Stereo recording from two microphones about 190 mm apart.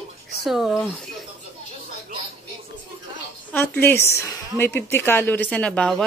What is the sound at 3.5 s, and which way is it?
A woman's voice, 10° left (ahead or behind).